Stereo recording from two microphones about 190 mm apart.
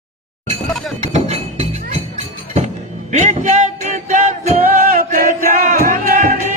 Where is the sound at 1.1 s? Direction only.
35° right (ahead or behind).